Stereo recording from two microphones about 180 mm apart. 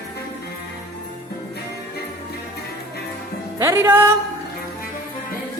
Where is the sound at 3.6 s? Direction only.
15° right (ahead or behind).